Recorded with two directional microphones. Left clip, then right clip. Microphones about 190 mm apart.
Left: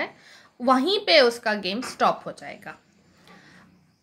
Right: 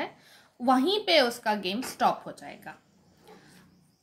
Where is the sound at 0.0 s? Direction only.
20° left (ahead or behind).